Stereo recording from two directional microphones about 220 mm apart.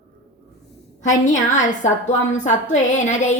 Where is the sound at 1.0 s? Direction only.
35° left (ahead or behind).